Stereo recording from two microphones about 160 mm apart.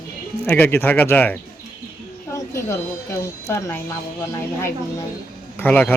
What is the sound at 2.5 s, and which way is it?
Speech, 15° left (ahead or behind).